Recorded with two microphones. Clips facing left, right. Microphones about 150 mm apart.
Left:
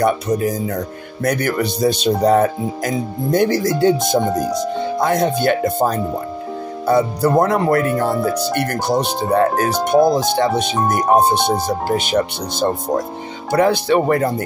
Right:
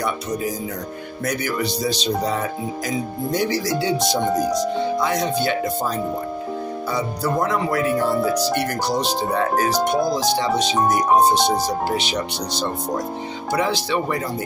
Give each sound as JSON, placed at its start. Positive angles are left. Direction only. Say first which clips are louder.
{"t": 0.0, "sound": "speech", "louder": "left 7 dB", "side_deg": 55}
{"t": 4.2, "sound": "speech", "louder": "left 1 dB", "side_deg": 5}
{"t": 4.9, "sound": "speech", "louder": "left 4 dB", "side_deg": 50}
{"t": 10.8, "sound": "speech", "louder": "even", "side_deg": 0}
{"t": 11.1, "sound": "speech", "louder": "left 3 dB", "side_deg": 55}